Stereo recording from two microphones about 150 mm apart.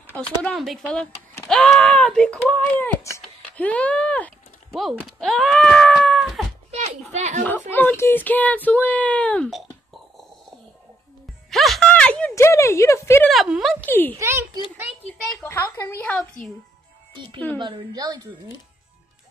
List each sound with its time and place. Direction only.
0.0 s speech: 10° left (ahead or behind)
7.1 s speech: 50° right (ahead or behind)
7.4 s speech: 10° left (ahead or behind)
11.5 s music: centre (ahead or behind)
11.9 s a sound: 10° left (ahead or behind)
13.3 s speech: centre (ahead or behind)
13.8 s speech: 15° left (ahead or behind)
14.1 s a woman's voice: 20° right (ahead or behind)
15.0 s a woman's voice: 5° left (ahead or behind)
15.4 s speech: 15° left (ahead or behind)
17.6 s a woman's voice: 30° right (ahead or behind)